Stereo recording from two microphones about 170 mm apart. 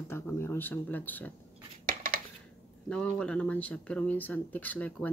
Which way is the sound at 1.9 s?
55° right (ahead or behind).